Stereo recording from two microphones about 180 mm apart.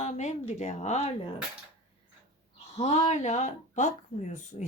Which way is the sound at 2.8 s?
40° left (ahead or behind).